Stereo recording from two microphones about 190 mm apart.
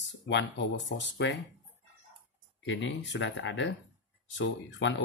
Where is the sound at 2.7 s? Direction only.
75° left (ahead or behind).